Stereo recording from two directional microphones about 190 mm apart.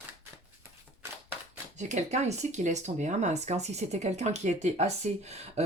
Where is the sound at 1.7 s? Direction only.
35° right (ahead or behind).